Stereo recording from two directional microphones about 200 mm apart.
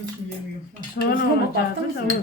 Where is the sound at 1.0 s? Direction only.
55° left (ahead or behind).